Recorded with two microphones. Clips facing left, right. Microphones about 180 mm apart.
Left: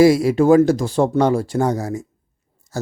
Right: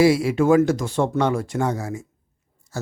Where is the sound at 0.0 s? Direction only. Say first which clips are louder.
Left 4 dB; 40° left (ahead or behind).